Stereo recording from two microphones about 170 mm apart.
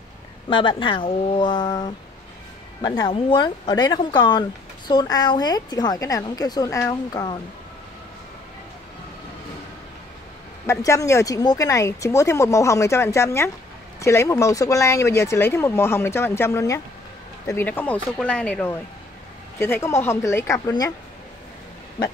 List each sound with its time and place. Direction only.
0.5 s speech: 30° left (ahead or behind)
3.1 s speech: 30° left (ahead or behind)
10.7 s speech: 20° left (ahead or behind)